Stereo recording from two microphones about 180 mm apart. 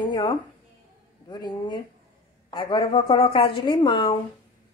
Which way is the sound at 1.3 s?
25° left (ahead or behind).